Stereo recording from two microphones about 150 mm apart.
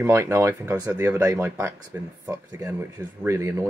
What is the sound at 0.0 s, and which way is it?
Speech, 20° right (ahead or behind).